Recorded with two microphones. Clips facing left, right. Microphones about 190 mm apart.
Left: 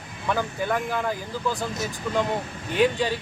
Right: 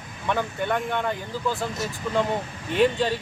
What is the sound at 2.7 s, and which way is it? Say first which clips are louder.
Speech: right 1 dB; centre (ahead or behind).